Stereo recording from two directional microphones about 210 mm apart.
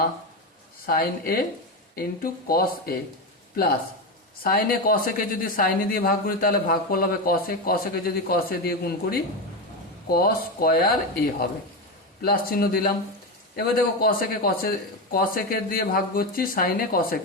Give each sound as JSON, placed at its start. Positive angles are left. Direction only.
{"t": 0.9, "sound": "speech", "side_deg": 45}
{"t": 12.2, "sound": "speech", "side_deg": 45}